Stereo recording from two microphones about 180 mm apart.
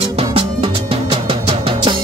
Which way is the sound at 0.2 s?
30° right (ahead or behind).